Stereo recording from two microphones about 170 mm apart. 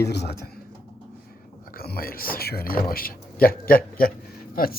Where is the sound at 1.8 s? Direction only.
60° left (ahead or behind).